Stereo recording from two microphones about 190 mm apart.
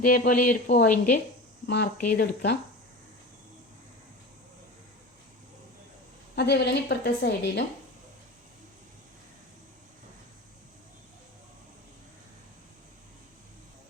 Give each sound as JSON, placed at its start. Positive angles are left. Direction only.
{"t": 0.0, "sound": "a woman's voice", "side_deg": 50}
{"t": 6.3, "sound": "a woman's voice", "side_deg": 60}